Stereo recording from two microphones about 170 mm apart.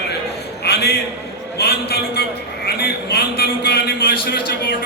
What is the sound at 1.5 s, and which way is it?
A man's voice, 70° left (ahead or behind).